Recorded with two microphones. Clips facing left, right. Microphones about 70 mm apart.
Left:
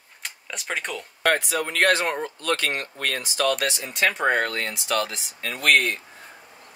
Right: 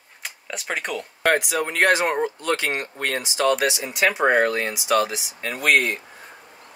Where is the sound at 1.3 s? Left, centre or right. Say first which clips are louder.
Right 4 dB; centre.